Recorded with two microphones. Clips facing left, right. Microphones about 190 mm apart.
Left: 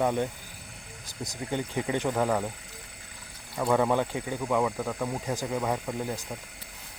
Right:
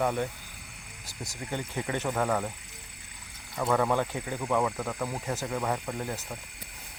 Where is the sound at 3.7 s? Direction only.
15° left (ahead or behind).